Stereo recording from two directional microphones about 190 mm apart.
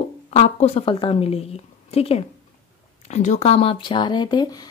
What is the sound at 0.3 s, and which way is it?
Speech, 35° left (ahead or behind).